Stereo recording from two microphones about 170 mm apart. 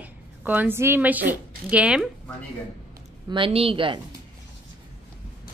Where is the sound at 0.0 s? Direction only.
10° right (ahead or behind).